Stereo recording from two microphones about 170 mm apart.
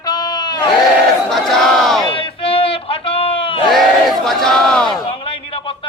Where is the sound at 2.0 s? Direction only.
30° left (ahead or behind).